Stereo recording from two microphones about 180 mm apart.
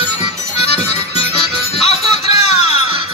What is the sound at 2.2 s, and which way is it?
Music, 35° left (ahead or behind).